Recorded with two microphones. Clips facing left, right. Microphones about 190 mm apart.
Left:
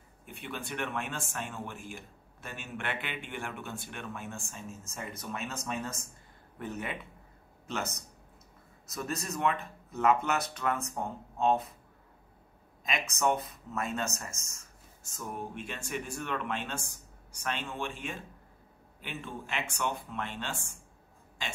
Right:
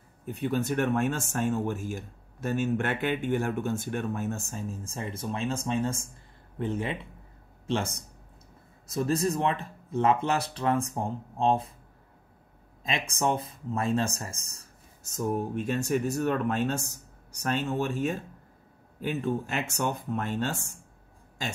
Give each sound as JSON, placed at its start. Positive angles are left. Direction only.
{"t": 0.2, "sound": "a man's voice", "side_deg": -40}
{"t": 12.8, "sound": "speech", "side_deg": -30}